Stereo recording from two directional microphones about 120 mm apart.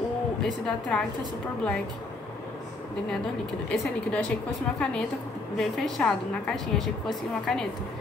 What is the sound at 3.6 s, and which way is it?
Speech, 10° left (ahead or behind).